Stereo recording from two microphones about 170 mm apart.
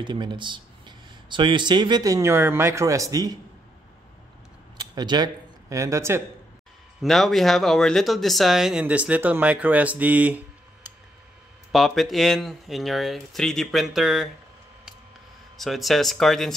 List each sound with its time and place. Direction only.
0.0 s speech: 25° right (ahead or behind)
4.9 s speech: 25° right (ahead or behind)
7.0 s speech: centre (ahead or behind)
15.5 s speech: centre (ahead or behind)